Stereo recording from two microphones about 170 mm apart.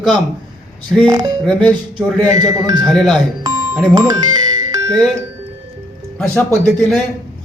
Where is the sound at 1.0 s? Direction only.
20° right (ahead or behind).